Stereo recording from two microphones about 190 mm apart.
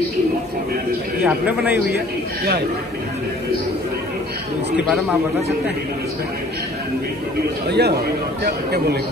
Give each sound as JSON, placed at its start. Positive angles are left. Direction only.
{"t": 1.2, "sound": "a man's voice", "side_deg": -10}
{"t": 7.6, "sound": "a man's voice", "side_deg": -60}